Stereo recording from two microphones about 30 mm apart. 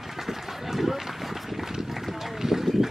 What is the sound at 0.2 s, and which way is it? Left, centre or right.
Run, centre.